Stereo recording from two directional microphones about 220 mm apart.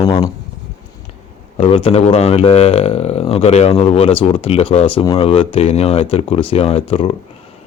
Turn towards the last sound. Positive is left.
turn(degrees=25)  # may be behind; listen again after turning